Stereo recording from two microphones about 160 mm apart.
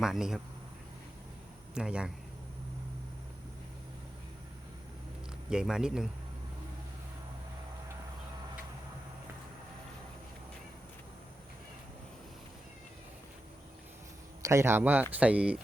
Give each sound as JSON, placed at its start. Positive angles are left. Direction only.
{"t": 0.0, "sound": "speech", "side_deg": -5}
{"t": 1.7, "sound": "speech", "side_deg": -5}
{"t": 5.5, "sound": "speech", "side_deg": -5}
{"t": 14.4, "sound": "speech", "side_deg": -15}